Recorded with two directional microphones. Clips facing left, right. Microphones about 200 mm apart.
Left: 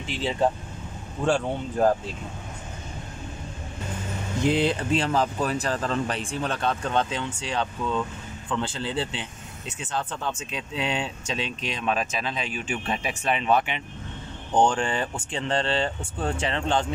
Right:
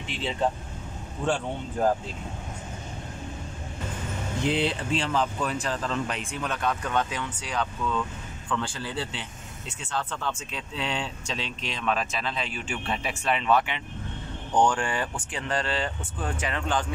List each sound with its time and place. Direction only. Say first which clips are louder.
1.2 s speech: left 4 dB; 45° left (ahead or behind)
4.5 s speech: left 4 dB; 45° left (ahead or behind); by 16.8 s 25° left (ahead or behind)